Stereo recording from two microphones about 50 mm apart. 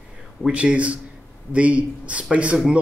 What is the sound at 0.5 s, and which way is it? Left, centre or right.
Speech, right.